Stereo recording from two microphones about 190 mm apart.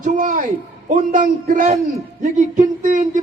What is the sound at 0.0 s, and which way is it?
A man's voice, 45° right (ahead or behind).